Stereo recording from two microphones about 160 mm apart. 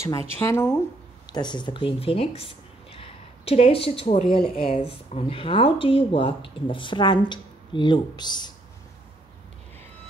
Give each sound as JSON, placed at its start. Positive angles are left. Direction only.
{"t": 0.4, "sound": "speech", "side_deg": 15}
{"t": 1.2, "sound": "speech", "side_deg": 25}